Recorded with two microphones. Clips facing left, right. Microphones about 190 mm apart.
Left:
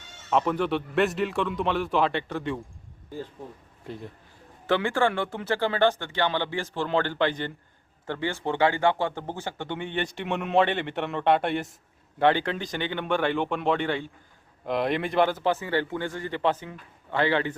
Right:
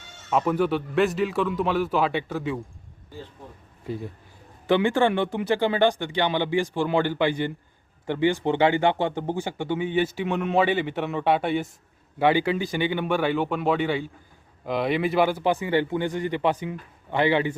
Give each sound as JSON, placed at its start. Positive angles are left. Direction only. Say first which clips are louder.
{"t": 0.3, "sound": "speech", "louder": "right 2 dB", "side_deg": -5}
{"t": 4.6, "sound": "speech", "louder": "right 3 dB", "side_deg": -15}